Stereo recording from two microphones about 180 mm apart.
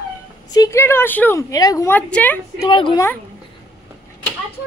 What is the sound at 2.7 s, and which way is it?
Speech, 25° left (ahead or behind).